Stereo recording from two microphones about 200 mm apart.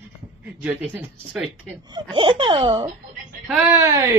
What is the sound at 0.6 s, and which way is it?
Speech, 10° right (ahead or behind).